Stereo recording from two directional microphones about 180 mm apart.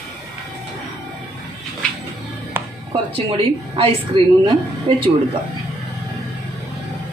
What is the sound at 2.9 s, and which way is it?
A woman's voice, 30° right (ahead or behind).